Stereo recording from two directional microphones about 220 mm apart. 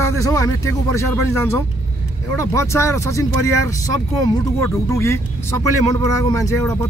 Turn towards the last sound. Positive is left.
turn(degrees=15)  # may be behind; listen again after turning